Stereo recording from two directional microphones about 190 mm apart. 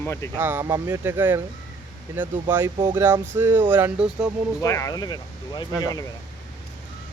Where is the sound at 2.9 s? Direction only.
10° right (ahead or behind).